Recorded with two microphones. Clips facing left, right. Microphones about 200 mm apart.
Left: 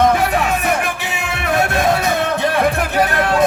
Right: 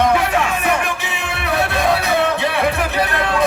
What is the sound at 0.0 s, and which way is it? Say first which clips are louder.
Music: left 1 dB; 45° left (ahead or behind).